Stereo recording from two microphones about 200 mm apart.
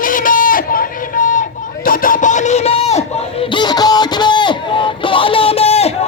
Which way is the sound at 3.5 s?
20° left (ahead or behind).